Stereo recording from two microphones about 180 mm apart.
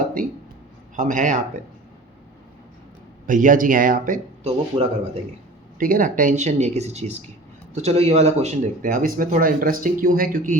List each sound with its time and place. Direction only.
0.0 s a sound: 50° right (ahead or behind)
0.9 s speech: 45° right (ahead or behind)
3.2 s speech: 45° right (ahead or behind)
4.7 s speech: 25° right (ahead or behind)
5.8 s speech: 50° right (ahead or behind)